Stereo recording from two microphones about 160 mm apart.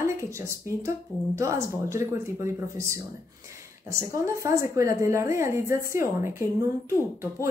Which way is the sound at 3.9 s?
20° right (ahead or behind).